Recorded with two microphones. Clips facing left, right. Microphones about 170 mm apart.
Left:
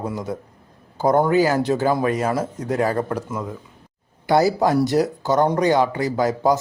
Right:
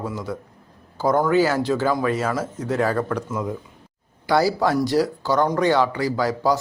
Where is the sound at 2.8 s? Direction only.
15° left (ahead or behind).